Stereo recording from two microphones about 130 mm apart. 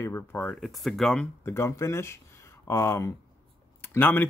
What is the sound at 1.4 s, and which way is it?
A man's voice, 20° left (ahead or behind).